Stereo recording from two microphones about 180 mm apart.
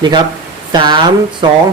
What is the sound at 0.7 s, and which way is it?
Speech, 25° right (ahead or behind).